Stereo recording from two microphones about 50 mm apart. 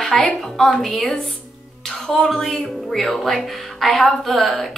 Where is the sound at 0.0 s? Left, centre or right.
Centre.